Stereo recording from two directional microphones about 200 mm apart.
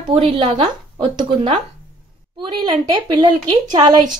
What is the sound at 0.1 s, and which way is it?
Speech, 30° right (ahead or behind).